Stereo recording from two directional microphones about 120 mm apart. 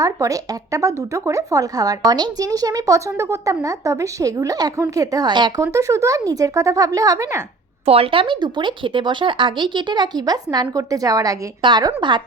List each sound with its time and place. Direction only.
0.0 s speech: 30° right (ahead or behind)
5.6 s speech: 25° right (ahead or behind)
7.9 s speech: 55° right (ahead or behind)